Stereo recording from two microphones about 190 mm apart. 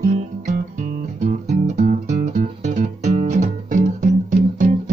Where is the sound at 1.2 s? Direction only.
40° right (ahead or behind).